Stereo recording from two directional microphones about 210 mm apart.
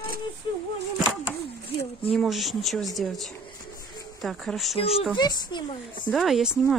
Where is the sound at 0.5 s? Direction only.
25° left (ahead or behind).